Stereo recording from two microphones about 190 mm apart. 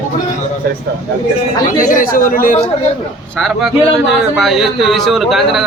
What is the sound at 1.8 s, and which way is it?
Speech, 45° left (ahead or behind).